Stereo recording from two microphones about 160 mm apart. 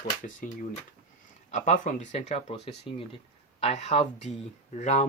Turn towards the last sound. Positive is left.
turn(degrees=45)  # may be behind; listen again after turning